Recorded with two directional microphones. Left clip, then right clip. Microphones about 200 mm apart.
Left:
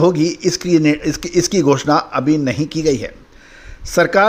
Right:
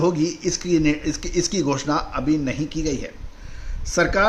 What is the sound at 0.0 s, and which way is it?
A man's voice, 40° left (ahead or behind).